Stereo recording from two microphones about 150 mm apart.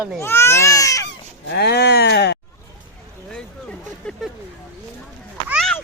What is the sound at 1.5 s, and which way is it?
Speech, 90° left.